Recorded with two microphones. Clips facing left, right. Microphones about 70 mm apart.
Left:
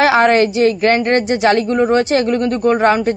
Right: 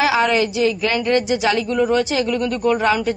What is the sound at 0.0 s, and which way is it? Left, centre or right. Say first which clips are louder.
A woman's voice: left 6 dB; left.